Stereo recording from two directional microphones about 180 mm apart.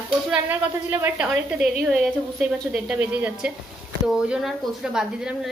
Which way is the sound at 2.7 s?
5° right (ahead or behind).